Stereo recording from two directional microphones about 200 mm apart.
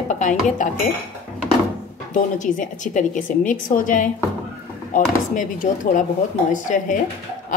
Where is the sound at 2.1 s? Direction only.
40° left (ahead or behind).